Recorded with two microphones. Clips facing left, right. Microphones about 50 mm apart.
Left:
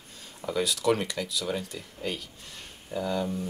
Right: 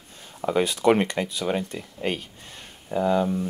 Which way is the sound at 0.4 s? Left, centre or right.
Right.